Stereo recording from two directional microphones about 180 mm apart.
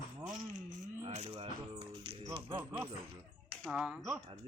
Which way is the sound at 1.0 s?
35° right (ahead or behind).